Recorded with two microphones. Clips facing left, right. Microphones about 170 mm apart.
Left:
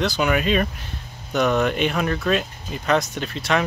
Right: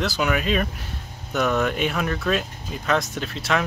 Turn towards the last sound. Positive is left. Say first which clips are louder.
# left 2 dB
turn(degrees=0)  # may be behind; listen again after turning